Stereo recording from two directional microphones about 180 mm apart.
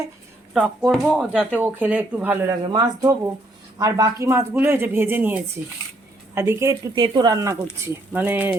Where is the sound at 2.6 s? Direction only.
20° right (ahead or behind).